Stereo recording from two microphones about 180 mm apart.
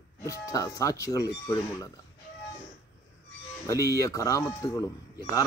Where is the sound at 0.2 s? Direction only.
20° left (ahead or behind).